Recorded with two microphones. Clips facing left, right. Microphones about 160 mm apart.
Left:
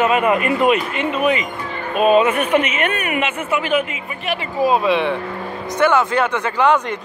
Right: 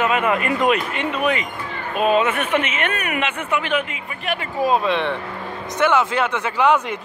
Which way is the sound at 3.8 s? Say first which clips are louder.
Left 2 dB; 40° right (ahead or behind).